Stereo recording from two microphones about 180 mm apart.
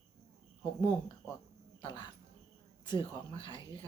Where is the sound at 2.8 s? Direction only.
25° left (ahead or behind).